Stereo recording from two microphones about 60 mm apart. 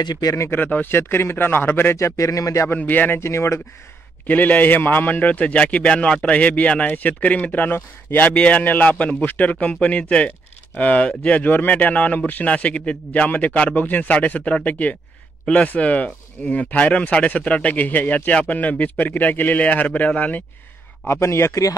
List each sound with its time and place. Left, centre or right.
0.2 s speech: left
0.6 s speech: left
2.0 s speech: left
2.8 s speech: left
3.2 s speech: left
4.3 s speech: left
8.3 s speech: left
21.1 s speech: left